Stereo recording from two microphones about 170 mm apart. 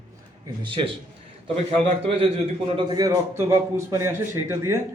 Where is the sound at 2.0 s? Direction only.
35° right (ahead or behind).